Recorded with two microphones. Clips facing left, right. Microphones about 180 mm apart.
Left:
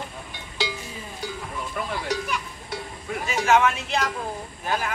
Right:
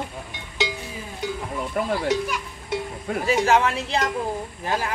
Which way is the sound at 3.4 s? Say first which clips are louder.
Even; 35° right (ahead or behind).